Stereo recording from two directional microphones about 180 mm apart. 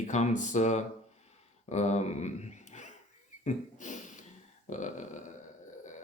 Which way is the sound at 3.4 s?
40° left (ahead or behind).